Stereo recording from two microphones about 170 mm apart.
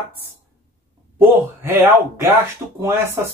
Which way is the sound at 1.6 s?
15° right (ahead or behind).